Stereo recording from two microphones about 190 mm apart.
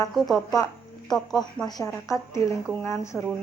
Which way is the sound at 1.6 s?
20° left (ahead or behind).